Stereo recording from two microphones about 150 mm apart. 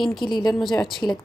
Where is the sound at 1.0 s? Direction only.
20° left (ahead or behind).